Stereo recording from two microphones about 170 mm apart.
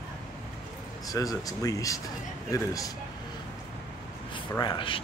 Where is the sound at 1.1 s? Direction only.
20° left (ahead or behind).